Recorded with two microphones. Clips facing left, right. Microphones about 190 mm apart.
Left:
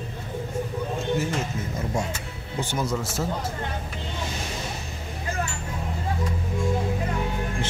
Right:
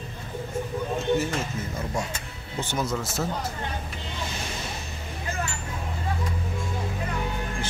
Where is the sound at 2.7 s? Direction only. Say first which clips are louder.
Even; 10° left (ahead or behind).